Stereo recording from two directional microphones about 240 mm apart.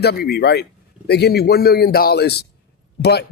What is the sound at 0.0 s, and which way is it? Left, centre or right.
Speech, left.